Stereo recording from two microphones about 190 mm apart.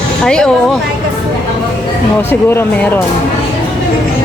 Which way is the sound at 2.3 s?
10° left (ahead or behind).